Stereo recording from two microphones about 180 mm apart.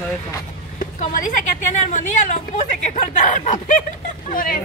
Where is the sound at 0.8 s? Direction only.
45° left (ahead or behind).